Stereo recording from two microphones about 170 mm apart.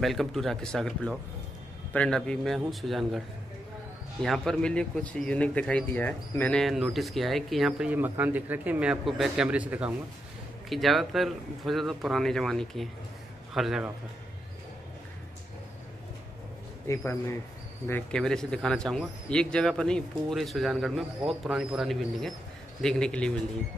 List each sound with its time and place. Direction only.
0.0 s speech: centre (ahead or behind)
4.2 s speech: 5° left (ahead or behind)
16.8 s speech: 15° left (ahead or behind)